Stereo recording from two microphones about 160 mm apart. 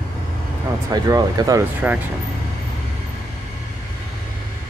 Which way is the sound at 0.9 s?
25° right (ahead or behind).